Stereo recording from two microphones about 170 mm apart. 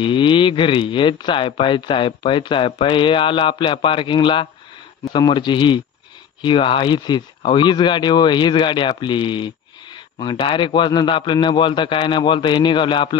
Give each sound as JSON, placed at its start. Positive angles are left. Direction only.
{"t": 0.0, "sound": "speech", "side_deg": 30}